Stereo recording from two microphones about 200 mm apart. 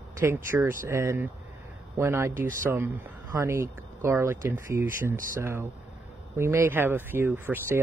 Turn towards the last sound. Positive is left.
turn(degrees=-10)  # may be behind; listen again after turning